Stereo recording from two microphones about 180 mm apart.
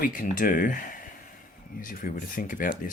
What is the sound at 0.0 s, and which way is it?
Speech, 50° left (ahead or behind).